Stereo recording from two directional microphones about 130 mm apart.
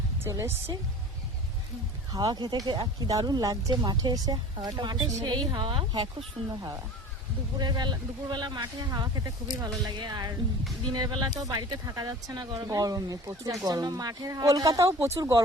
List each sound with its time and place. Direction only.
0.3 s speech: 25° right (ahead or behind)
2.1 s speech: 35° right (ahead or behind)
7.6 s speech: 35° right (ahead or behind)
14.9 s speech: 15° right (ahead or behind)